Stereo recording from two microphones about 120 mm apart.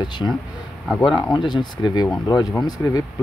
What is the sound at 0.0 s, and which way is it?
Speech, 35° left (ahead or behind).